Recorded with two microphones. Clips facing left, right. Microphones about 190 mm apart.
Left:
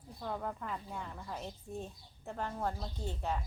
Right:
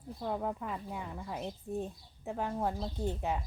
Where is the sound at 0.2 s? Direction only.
15° right (ahead or behind).